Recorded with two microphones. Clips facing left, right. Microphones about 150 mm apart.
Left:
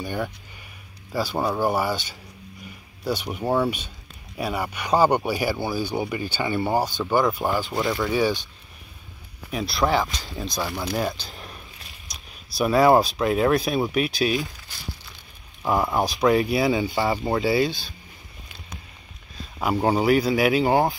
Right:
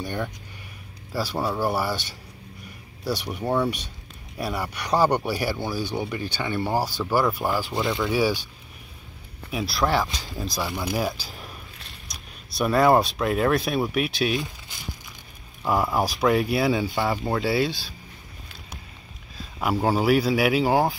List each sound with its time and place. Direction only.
0.0 s speech: centre (ahead or behind)
1.5 s speech: 20° left (ahead or behind)
1.9 s speech: centre (ahead or behind)
3.4 s speech: 5° left (ahead or behind)
9.5 s speech: centre (ahead or behind)
15.6 s speech: centre (ahead or behind)
19.6 s speech: centre (ahead or behind)